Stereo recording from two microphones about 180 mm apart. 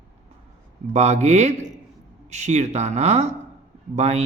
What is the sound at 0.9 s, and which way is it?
Speech, 40° right (ahead or behind).